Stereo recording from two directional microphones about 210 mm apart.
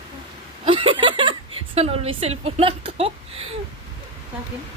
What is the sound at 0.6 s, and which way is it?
Chuckle, 25° right (ahead or behind).